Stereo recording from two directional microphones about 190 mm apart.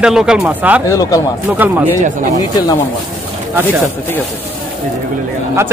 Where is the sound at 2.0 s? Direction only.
40° right (ahead or behind).